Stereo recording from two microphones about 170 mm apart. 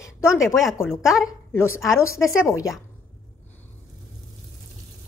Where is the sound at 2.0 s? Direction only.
15° left (ahead or behind).